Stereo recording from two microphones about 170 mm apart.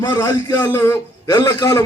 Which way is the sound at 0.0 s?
20° left (ahead or behind).